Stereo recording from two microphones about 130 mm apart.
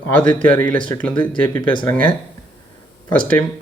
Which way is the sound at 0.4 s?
15° left (ahead or behind).